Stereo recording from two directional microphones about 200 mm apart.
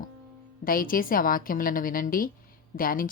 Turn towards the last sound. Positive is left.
turn(degrees=45)  # may be behind; listen again after turning